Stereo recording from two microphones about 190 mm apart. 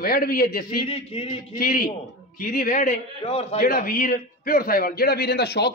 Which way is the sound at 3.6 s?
50° left (ahead or behind).